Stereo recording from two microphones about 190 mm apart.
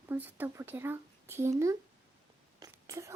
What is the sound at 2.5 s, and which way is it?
Whispering, 20° right (ahead or behind).